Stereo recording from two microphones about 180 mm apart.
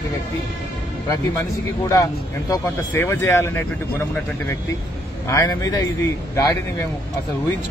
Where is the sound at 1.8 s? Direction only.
20° left (ahead or behind).